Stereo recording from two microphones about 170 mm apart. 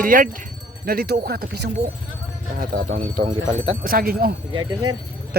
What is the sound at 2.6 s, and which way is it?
Speech, 55° right (ahead or behind).